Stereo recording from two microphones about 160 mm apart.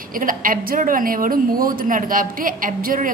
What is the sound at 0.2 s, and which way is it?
A woman's voice, 60° right (ahead or behind).